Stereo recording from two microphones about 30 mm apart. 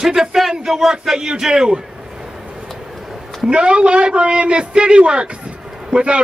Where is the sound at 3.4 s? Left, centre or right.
Right.